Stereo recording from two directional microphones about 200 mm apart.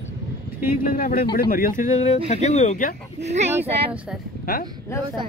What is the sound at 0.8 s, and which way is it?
A man's voice, 45° left (ahead or behind).